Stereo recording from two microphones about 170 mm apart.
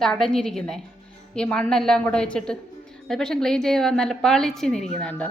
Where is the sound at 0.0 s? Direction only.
5° left (ahead or behind).